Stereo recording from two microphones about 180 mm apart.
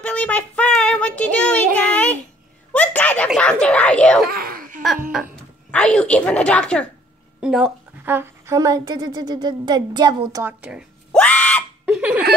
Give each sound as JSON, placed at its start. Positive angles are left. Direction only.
{"t": 0.0, "sound": "child singing", "side_deg": 10}
{"t": 2.7, "sound": "a sound", "side_deg": 10}
{"t": 3.3, "sound": "speech", "side_deg": 5}
{"t": 4.3, "sound": "baby laughter", "side_deg": -55}
{"t": 5.7, "sound": "a woman's voice", "side_deg": 5}
{"t": 10.4, "sound": "a woman's voice", "side_deg": -5}
{"t": 11.1, "sound": "screaming", "side_deg": 10}
{"t": 11.8, "sound": "hiccup", "side_deg": -5}